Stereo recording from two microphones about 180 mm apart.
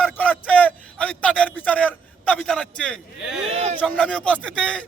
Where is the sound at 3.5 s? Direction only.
35° right (ahead or behind).